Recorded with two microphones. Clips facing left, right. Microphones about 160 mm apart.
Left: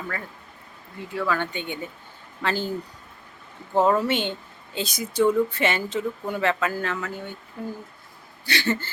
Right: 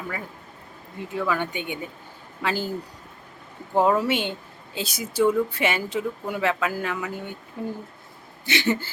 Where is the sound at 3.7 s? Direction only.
10° right (ahead or behind).